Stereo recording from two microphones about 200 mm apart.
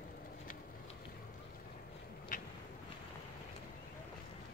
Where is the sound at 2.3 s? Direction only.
40° left (ahead or behind).